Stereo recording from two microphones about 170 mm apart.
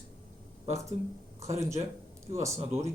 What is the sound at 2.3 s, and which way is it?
Speech, 15° right (ahead or behind).